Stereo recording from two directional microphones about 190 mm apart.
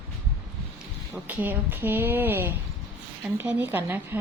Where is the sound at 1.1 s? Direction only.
10° right (ahead or behind).